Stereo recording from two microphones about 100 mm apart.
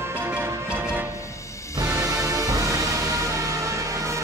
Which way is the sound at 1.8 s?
45° right (ahead or behind).